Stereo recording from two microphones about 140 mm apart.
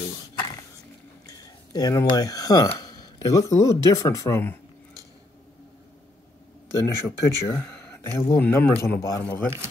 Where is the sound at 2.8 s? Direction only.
30° left (ahead or behind).